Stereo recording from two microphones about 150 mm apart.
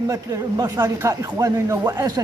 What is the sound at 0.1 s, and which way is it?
Speech, 25° right (ahead or behind).